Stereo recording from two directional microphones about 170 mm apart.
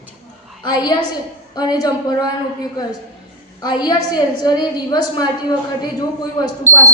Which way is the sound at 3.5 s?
25° left (ahead or behind).